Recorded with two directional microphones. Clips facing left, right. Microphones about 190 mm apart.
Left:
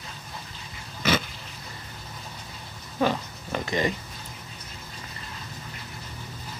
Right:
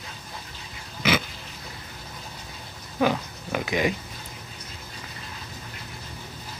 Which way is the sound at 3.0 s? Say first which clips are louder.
Right 2 dB; 5° right (ahead or behind).